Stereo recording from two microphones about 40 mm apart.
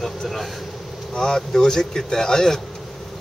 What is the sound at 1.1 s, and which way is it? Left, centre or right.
Speech, centre.